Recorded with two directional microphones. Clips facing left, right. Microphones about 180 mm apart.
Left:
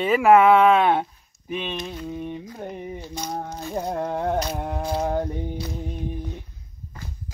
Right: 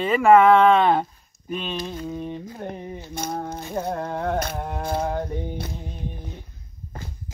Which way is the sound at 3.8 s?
15° left (ahead or behind).